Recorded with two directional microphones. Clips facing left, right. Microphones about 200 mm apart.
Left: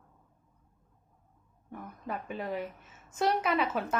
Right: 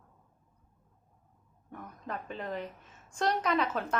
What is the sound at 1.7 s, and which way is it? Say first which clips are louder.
Speech: left 2 dB; 5° left (ahead or behind).